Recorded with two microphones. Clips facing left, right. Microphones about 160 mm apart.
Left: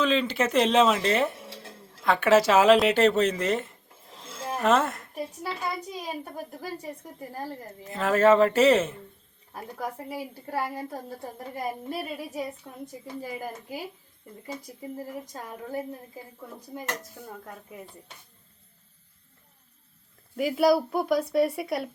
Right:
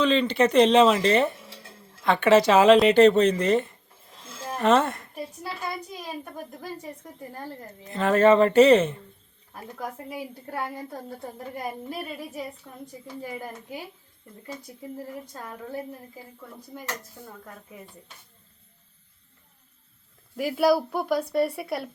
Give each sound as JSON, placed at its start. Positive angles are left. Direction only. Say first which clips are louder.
{"t": 0.0, "sound": "a woman's voice", "louder": "right 3 dB", "side_deg": 5}
{"t": 7.2, "sound": "a woman's voice", "louder": "left 2 dB", "side_deg": 5}
{"t": 10.2, "sound": "a woman's voice", "louder": "left 1 dB", "side_deg": 5}
{"t": 13.3, "sound": "speech", "louder": "left 1 dB", "side_deg": 5}
{"t": 20.3, "sound": "a woman's voice", "louder": "even", "side_deg": 0}